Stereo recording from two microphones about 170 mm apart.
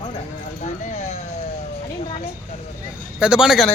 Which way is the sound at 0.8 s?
45° left (ahead or behind).